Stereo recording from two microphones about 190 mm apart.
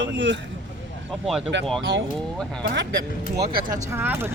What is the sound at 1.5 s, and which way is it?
Speech, 70° right (ahead or behind).